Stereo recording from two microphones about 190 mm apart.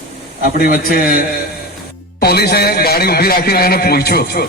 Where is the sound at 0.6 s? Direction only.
50° left (ahead or behind).